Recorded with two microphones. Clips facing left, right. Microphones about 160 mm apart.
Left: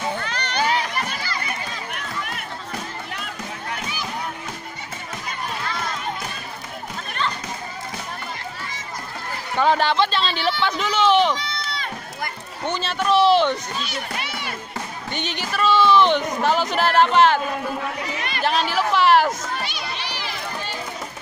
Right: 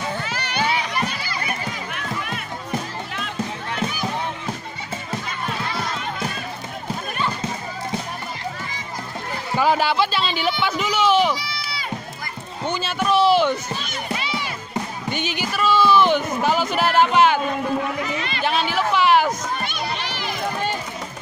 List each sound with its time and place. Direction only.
0.2 s music: 5° right (ahead or behind)
1.0 s run: 15° right (ahead or behind)
9.6 s a man's voice: 5° right (ahead or behind)
14.1 s music: 55° left (ahead or behind)
15.0 s a man's voice: 5° right (ahead or behind)
18.4 s a sound: centre (ahead or behind)
19.6 s children playing: 50° right (ahead or behind)